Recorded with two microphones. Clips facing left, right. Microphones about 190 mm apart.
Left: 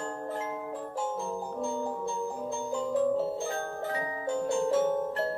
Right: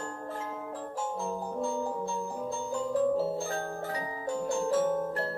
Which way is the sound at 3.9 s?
25° left (ahead or behind).